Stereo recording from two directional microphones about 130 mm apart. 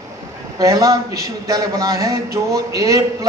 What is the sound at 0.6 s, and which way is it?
A man's voice, 25° right (ahead or behind).